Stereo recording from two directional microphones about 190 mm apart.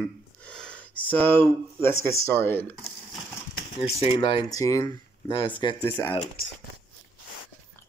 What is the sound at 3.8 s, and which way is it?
Speech, 30° left (ahead or behind).